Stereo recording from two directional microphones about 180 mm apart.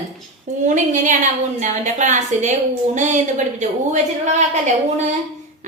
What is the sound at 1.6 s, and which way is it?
A woman's voice, 45° right (ahead or behind).